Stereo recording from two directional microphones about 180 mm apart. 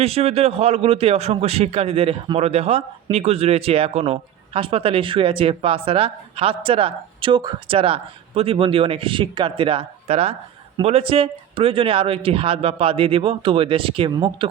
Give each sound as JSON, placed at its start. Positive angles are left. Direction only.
{"t": 0.0, "sound": "a man's voice", "side_deg": -35}